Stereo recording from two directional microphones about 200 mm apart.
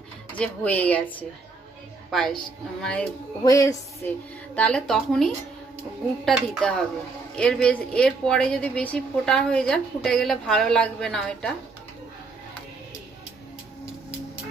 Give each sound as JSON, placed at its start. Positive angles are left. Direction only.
{"t": 0.4, "sound": "a woman's voice", "side_deg": 5}
{"t": 3.4, "sound": "speech", "side_deg": 15}
{"t": 4.6, "sound": "a woman's voice", "side_deg": 5}